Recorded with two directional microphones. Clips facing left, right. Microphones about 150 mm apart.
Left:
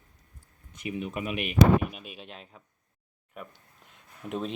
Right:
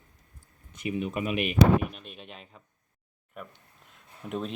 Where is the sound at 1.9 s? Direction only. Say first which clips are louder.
Left 1 dB; 5° left (ahead or behind).